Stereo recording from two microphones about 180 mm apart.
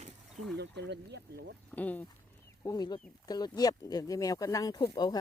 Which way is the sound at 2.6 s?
20° left (ahead or behind).